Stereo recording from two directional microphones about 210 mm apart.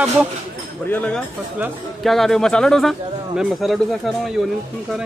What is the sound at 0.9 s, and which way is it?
Speech, 5° left (ahead or behind).